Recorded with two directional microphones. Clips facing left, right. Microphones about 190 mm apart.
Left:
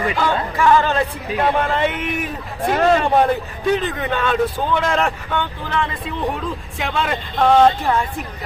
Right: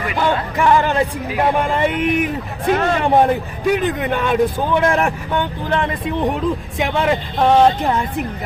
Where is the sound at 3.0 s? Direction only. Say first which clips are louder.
Right 2 dB; 15° right (ahead or behind).